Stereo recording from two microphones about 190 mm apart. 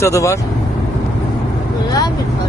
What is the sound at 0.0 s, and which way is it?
Speech, 15° left (ahead or behind).